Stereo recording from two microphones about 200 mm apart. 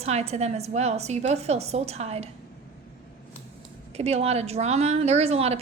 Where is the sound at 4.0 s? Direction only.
30° right (ahead or behind).